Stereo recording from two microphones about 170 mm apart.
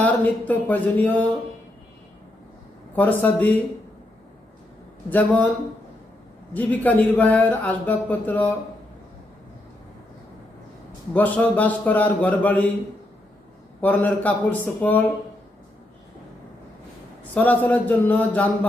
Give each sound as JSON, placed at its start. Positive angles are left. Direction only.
{"t": 0.0, "sound": "a man's voice", "side_deg": 10}
{"t": 2.9, "sound": "a man's voice", "side_deg": 10}
{"t": 5.0, "sound": "a man's voice", "side_deg": 10}
{"t": 6.5, "sound": "a man's voice", "side_deg": 10}
{"t": 11.1, "sound": "a man's voice", "side_deg": 10}
{"t": 13.8, "sound": "a man's voice", "side_deg": 10}
{"t": 17.3, "sound": "a man's voice", "side_deg": 10}